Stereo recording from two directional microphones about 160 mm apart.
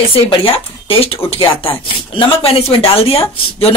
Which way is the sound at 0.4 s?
35° left (ahead or behind).